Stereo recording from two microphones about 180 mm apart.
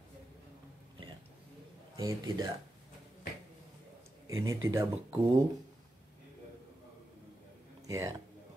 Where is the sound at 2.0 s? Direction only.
25° right (ahead or behind).